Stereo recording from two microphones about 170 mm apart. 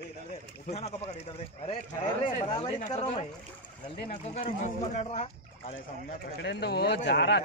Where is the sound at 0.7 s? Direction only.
40° left (ahead or behind).